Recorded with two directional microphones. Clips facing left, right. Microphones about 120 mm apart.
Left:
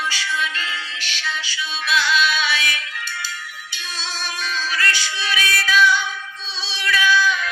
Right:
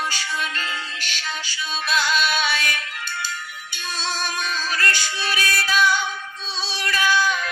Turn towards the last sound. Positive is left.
turn(degrees=-45)  # may be behind; listen again after turning